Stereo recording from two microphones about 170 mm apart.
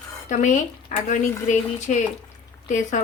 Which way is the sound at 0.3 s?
45° left (ahead or behind).